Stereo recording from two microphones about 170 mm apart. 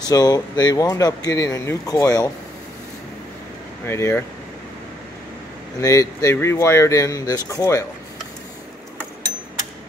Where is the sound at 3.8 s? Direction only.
15° left (ahead or behind).